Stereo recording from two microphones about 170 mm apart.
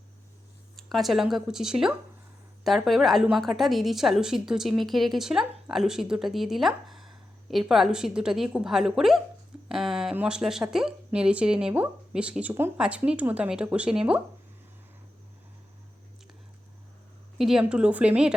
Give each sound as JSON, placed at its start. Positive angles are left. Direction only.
{"t": 0.8, "sound": "speech", "side_deg": 0}
{"t": 17.3, "sound": "speech", "side_deg": 0}